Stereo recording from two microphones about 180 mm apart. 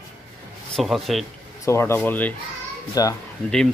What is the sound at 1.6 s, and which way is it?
Speech, 15° left (ahead or behind).